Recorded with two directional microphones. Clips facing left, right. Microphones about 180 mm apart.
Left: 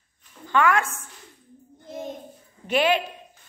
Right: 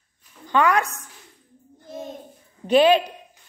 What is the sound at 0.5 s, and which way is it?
Speech, 20° right (ahead or behind).